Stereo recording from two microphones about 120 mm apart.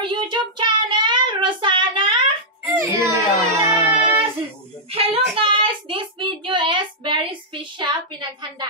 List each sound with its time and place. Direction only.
0.0 s child singing: 40° right (ahead or behind)
2.7 s child singing: 20° right (ahead or behind)
4.9 s child singing: 50° right (ahead or behind)